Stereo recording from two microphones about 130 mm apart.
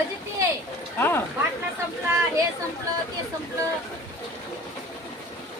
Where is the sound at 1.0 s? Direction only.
15° left (ahead or behind).